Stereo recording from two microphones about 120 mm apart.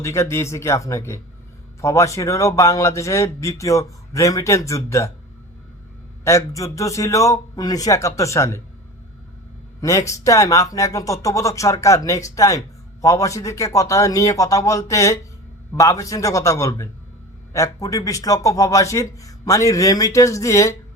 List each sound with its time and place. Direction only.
0.0 s speech: 25° left (ahead or behind)
6.2 s speech: 25° left (ahead or behind)
10.1 s speech: 25° left (ahead or behind)